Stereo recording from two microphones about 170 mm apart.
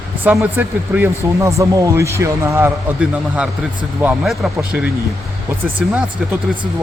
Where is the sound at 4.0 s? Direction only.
5° right (ahead or behind).